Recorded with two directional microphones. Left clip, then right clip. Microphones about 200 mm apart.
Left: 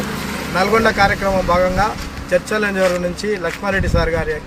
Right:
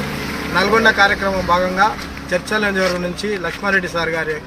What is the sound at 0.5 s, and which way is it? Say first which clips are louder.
Speech: right 1 dB; 5° left (ahead or behind).